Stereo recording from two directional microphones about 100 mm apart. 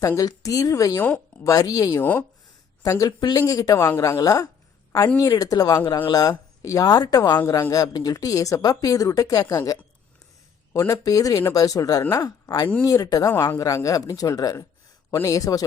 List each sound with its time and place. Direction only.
0.0 s speech: 35° left (ahead or behind)
2.0 s speech: 15° left (ahead or behind)
2.8 s speech: 35° left (ahead or behind)